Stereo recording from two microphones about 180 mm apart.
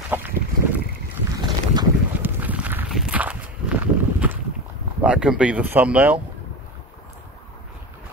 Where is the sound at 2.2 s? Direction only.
10° right (ahead or behind).